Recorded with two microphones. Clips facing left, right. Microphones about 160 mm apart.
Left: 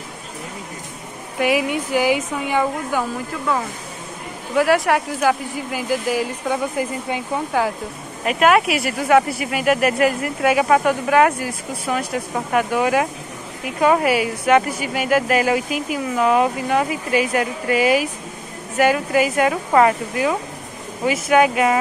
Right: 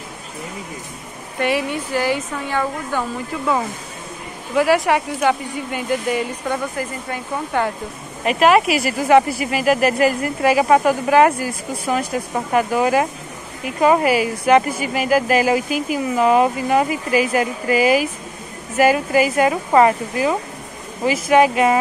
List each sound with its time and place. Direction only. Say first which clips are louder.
1.4 s speech: left 1 dB; 10° left (ahead or behind)
4.6 s speech: right 1 dB; centre (ahead or behind)